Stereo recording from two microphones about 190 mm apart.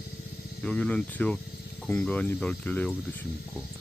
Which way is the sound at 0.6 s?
5° left (ahead or behind).